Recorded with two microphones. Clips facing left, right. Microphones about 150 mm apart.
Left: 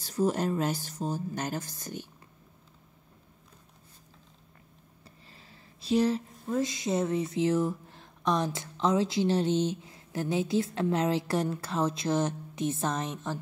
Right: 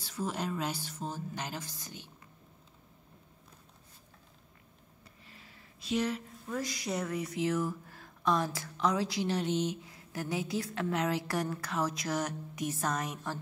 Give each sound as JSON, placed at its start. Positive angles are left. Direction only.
{"t": 0.0, "sound": "speech", "side_deg": 45}
{"t": 5.3, "sound": "speech", "side_deg": 30}